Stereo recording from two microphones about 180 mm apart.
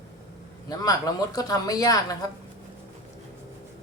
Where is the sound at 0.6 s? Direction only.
20° left (ahead or behind).